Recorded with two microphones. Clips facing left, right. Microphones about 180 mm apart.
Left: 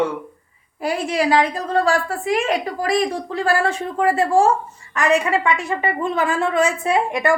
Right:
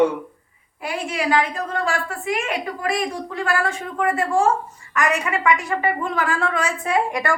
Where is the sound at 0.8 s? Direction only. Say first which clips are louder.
Left 5 dB; 35° left (ahead or behind).